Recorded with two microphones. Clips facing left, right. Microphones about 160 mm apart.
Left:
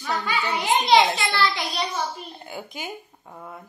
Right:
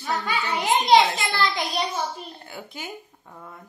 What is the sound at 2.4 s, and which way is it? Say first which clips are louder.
Speech: left 3 dB; 15° left (ahead or behind).